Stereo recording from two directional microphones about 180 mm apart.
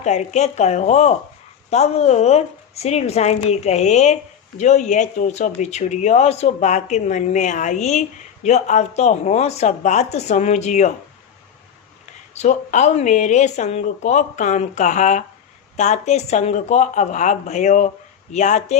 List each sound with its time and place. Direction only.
0.0 s a woman's voice: 40° left (ahead or behind)
12.3 s a woman's voice: 40° left (ahead or behind)